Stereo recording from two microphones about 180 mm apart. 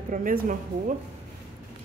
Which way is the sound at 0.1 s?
50° right (ahead or behind).